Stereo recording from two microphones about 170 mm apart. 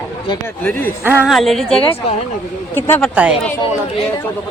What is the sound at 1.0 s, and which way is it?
A woman's voice, 5° right (ahead or behind).